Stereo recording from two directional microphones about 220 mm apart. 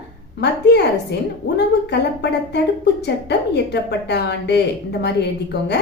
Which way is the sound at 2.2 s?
50° left (ahead or behind).